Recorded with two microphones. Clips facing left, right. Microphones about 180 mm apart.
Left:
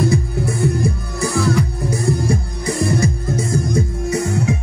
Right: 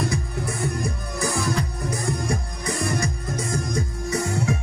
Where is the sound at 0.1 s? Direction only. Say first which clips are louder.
Left 8 dB; 30° left (ahead or behind).